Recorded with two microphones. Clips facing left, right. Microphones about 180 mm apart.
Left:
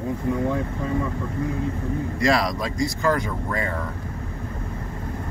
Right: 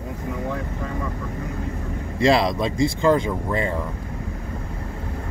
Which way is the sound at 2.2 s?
25° right (ahead or behind).